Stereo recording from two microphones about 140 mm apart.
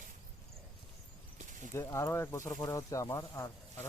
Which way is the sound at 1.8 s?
20° left (ahead or behind).